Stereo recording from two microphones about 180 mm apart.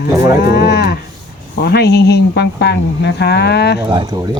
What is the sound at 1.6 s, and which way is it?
Speech, 65° left (ahead or behind).